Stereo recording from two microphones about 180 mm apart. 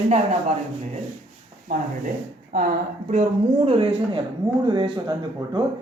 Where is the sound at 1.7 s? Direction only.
50° right (ahead or behind).